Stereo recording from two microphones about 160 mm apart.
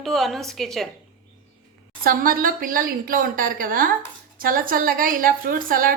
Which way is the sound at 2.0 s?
60° right (ahead or behind).